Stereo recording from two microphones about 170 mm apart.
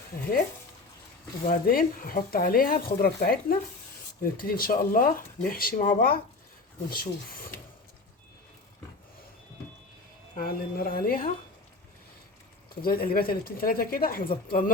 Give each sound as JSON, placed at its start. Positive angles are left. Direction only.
{"t": 1.5, "sound": "speech", "side_deg": 55}
{"t": 10.3, "sound": "speech", "side_deg": 55}
{"t": 12.8, "sound": "speech", "side_deg": 60}